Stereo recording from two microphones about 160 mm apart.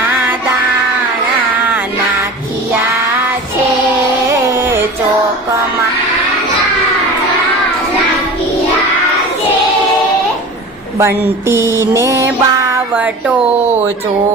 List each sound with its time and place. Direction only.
4.5 s music: 15° right (ahead or behind)
10.9 s music: 15° right (ahead or behind)
12.9 s music: 10° right (ahead or behind)